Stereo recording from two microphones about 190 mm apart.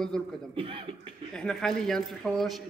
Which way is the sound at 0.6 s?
30° right (ahead or behind).